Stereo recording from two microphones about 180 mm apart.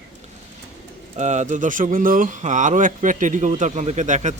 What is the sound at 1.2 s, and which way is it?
Speech, 40° right (ahead or behind).